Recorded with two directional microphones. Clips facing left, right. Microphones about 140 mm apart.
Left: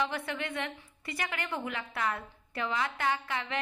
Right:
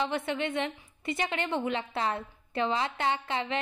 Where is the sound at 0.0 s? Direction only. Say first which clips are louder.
Right 4 dB; 25° right (ahead or behind).